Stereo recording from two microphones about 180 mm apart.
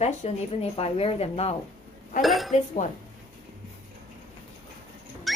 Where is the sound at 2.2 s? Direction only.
Centre (ahead or behind).